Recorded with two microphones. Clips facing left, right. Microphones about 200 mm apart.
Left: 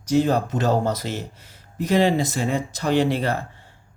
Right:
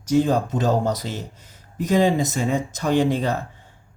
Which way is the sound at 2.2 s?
45° right (ahead or behind).